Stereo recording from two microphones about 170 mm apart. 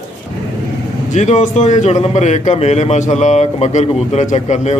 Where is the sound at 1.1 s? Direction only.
45° left (ahead or behind).